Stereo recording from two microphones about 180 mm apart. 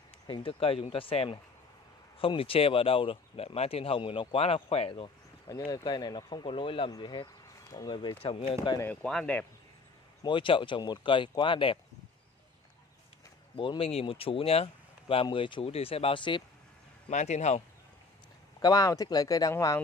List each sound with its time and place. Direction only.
0.3 s speech: 30° left (ahead or behind)
8.7 s speech: 10° left (ahead or behind)
10.2 s speech: 30° left (ahead or behind)
13.6 s speech: 30° left (ahead or behind)
17.1 s speech: 40° left (ahead or behind)
18.6 s speech: 20° left (ahead or behind)